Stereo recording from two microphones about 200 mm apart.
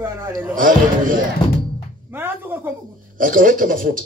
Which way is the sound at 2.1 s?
10° right (ahead or behind).